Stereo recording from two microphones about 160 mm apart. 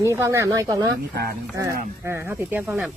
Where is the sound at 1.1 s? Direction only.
75° right (ahead or behind).